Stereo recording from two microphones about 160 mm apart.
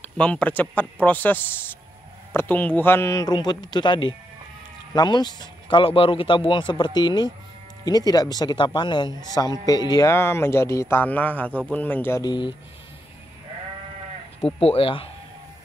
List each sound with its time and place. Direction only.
0.0 s a man's voice: 10° left (ahead or behind); by 12.5 s 30° left (ahead or behind)
14.4 s speech: 35° left (ahead or behind)